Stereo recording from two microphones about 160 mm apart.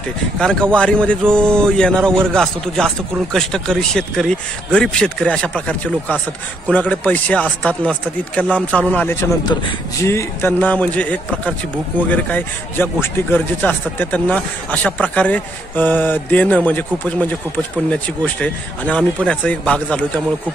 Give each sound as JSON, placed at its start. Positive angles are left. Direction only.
{"t": 0.4, "sound": "a man's voice", "side_deg": 5}